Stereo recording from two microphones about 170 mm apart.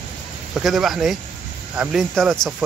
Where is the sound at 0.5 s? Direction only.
Centre (ahead or behind).